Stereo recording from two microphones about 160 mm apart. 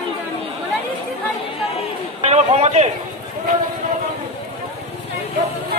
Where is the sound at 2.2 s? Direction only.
40° right (ahead or behind).